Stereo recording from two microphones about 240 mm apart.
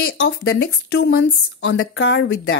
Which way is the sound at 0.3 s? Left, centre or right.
Left.